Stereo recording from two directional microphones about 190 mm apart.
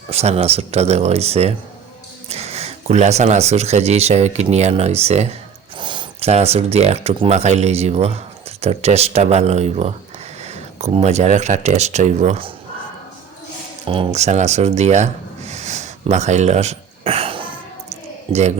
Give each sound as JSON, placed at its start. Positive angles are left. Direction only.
{"t": 0.1, "sound": "speech", "side_deg": -35}
{"t": 13.8, "sound": "a man's voice", "side_deg": -30}